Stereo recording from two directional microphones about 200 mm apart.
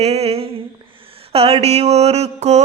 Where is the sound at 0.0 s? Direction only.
30° right (ahead or behind).